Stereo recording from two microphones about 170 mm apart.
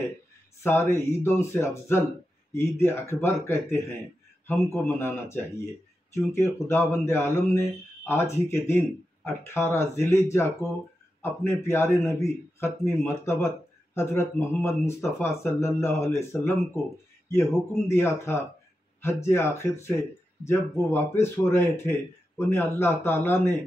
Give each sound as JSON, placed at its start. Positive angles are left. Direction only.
{"t": 0.7, "sound": "speech", "side_deg": 15}